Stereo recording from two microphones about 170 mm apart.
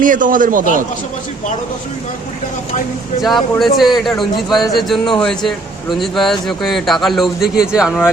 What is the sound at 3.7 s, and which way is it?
A man's voice, centre (ahead or behind).